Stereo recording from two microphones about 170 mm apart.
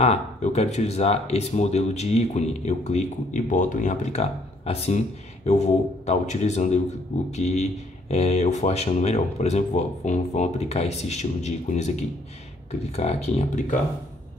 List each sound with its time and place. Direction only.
0.0 s speech: 40° left (ahead or behind)